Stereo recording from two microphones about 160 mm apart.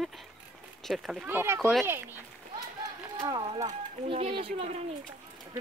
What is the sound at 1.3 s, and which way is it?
Speech, 15° right (ahead or behind).